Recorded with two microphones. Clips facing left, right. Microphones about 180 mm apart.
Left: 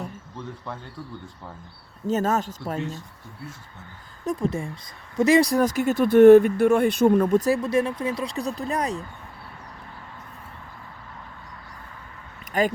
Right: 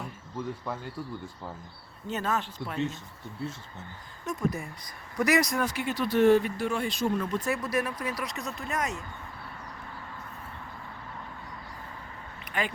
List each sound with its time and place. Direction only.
2.0 s speech: 40° left (ahead or behind)
3.4 s speech: 25° right (ahead or behind)
4.3 s speech: 30° left (ahead or behind)
7.6 s speech: 25° left (ahead or behind)
12.5 s speech: 40° left (ahead or behind)